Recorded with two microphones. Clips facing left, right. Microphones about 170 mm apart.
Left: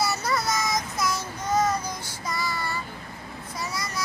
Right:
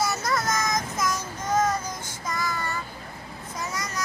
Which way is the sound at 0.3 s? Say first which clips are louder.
Even; 10° left (ahead or behind).